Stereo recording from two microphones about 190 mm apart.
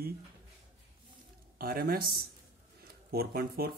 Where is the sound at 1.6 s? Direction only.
50° right (ahead or behind).